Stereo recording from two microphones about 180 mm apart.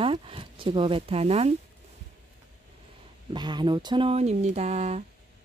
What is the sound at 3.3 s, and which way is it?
Speech, 25° right (ahead or behind).